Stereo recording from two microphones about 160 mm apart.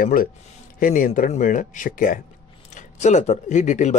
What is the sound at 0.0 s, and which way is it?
A man's voice, 60° left (ahead or behind).